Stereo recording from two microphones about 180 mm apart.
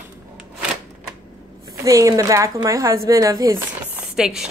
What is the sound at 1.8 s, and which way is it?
A woman's voice, 20° right (ahead or behind).